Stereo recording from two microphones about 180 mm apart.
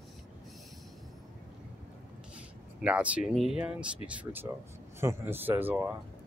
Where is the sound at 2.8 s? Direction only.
5° right (ahead or behind).